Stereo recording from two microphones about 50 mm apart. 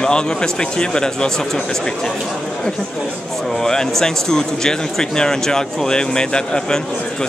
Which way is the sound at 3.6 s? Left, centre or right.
Centre.